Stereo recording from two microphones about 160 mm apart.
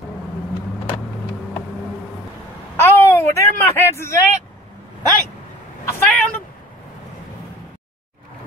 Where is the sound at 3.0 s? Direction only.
15° left (ahead or behind).